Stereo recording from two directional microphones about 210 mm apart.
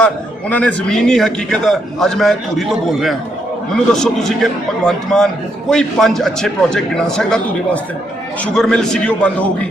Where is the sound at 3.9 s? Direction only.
Centre (ahead or behind).